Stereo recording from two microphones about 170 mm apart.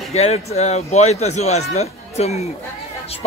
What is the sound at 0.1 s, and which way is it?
A man's voice, 40° left (ahead or behind).